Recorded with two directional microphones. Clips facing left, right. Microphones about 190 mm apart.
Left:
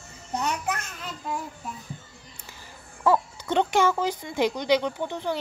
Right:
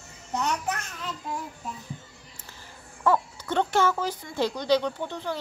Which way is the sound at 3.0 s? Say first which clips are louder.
Left 2 dB; 15° left (ahead or behind).